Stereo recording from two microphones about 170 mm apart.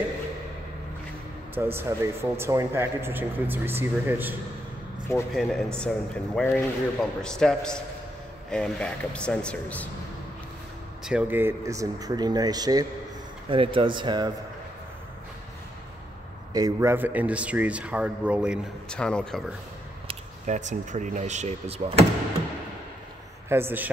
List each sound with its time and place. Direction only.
1.5 s speech: 15° right (ahead or behind)
5.3 s speech: centre (ahead or behind)
11.1 s speech: 10° right (ahead or behind); by 14.3 s 25° right (ahead or behind)
16.5 s speech: 20° right (ahead or behind)
18.9 s speech: 5° left (ahead or behind)
20.1 s speech: 45° right (ahead or behind)
23.5 s speech: 10° right (ahead or behind)